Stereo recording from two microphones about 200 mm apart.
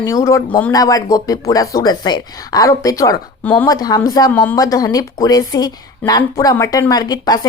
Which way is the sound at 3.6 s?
20° left (ahead or behind).